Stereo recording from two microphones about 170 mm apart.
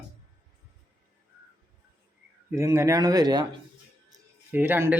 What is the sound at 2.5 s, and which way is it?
Speech, 15° right (ahead or behind).